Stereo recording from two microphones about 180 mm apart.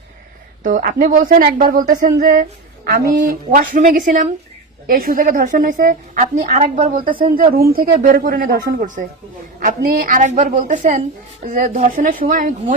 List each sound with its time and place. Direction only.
0.6 s a woman's voice: 50° right (ahead or behind)